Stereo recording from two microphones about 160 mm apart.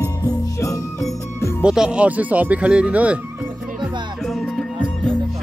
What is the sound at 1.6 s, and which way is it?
Speech, 5° right (ahead or behind).